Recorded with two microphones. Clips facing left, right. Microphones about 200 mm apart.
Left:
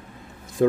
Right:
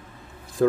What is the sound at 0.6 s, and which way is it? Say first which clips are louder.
Speech: left 1 dB; 20° left (ahead or behind).